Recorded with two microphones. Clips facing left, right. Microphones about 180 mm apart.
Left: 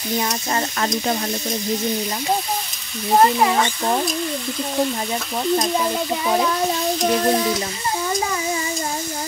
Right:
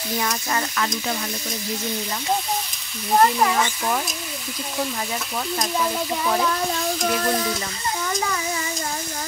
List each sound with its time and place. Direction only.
0.2 s speech: 30° left (ahead or behind)
3.2 s frying: 15° left (ahead or behind)
5.8 s frying: 15° left (ahead or behind)
7.0 s speech: 30° left (ahead or behind)